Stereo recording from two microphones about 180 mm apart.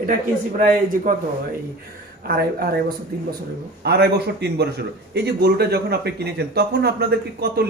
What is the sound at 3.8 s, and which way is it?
Speech, 65° right (ahead or behind).